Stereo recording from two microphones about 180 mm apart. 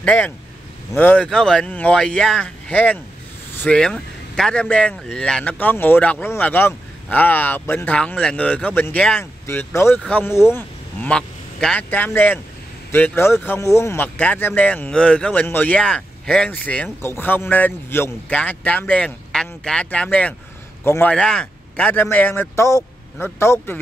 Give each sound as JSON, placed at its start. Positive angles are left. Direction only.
{"t": 0.0, "sound": "speech", "side_deg": 5}